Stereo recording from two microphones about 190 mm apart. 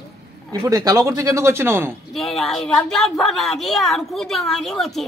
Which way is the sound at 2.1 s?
Centre (ahead or behind).